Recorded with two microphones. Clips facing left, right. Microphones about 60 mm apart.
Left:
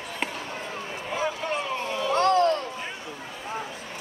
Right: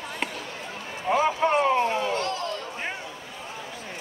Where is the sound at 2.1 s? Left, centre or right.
Left.